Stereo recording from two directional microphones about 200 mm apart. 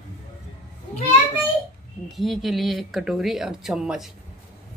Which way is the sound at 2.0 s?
Centre (ahead or behind).